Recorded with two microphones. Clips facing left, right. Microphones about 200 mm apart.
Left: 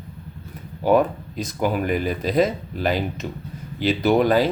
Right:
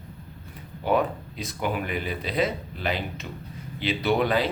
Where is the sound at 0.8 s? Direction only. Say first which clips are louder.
Left 6 dB; 45° left (ahead or behind).